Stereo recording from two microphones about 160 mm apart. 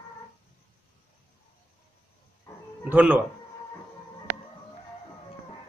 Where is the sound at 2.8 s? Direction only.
10° right (ahead or behind).